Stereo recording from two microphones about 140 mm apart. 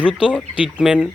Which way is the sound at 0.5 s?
5° right (ahead or behind).